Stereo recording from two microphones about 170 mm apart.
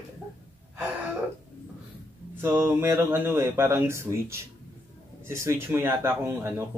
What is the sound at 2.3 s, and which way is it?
A man's voice, 15° right (ahead or behind).